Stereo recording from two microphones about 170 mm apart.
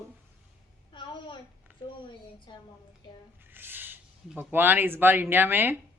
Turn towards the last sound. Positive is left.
turn(degrees=-10)  # may be behind; listen again after turning